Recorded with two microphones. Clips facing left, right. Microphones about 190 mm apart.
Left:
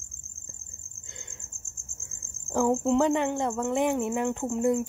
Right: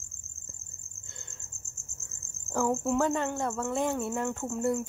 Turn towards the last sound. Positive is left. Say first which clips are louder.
# left 4 dB
turn(degrees=20)  # may be behind; listen again after turning